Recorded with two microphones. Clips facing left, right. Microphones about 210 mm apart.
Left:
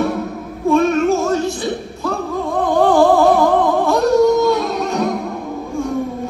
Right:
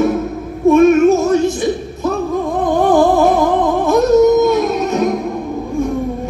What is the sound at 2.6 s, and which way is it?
Music, 20° right (ahead or behind).